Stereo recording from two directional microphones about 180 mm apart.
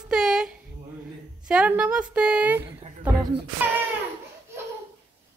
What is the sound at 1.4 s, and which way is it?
Speech, 5° right (ahead or behind).